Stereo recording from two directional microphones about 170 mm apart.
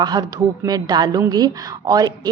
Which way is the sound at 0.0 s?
20° right (ahead or behind).